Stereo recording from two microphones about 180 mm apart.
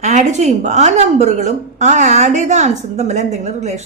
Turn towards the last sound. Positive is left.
turn(degrees=-40)  # may be behind; listen again after turning